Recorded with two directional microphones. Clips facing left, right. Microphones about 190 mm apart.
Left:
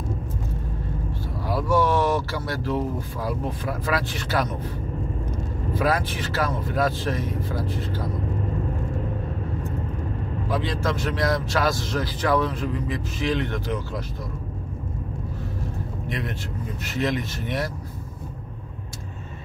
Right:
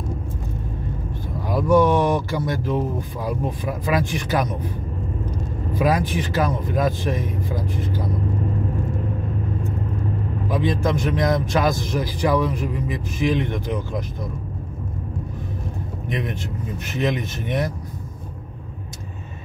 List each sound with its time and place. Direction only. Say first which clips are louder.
1.5 s a man's voice: right 5 dB; 15° right (ahead or behind)
5.7 s a man's voice: right 3 dB; 15° right (ahead or behind)
10.5 s a man's voice: right 4 dB; 15° right (ahead or behind)
16.1 s speech: right 5 dB; 20° right (ahead or behind)